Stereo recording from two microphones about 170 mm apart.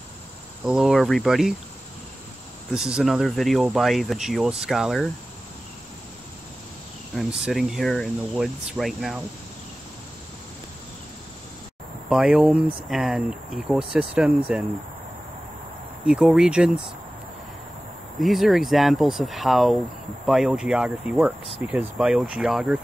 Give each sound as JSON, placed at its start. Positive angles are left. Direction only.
{"t": 0.7, "sound": "speech", "side_deg": 0}
{"t": 2.7, "sound": "speech", "side_deg": -5}
{"t": 7.2, "sound": "speech", "side_deg": -5}
{"t": 12.1, "sound": "speech", "side_deg": -5}
{"t": 16.1, "sound": "speech", "side_deg": -5}
{"t": 18.2, "sound": "speech", "side_deg": 0}